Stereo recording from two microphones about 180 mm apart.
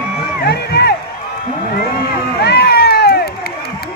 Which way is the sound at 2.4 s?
60° left (ahead or behind).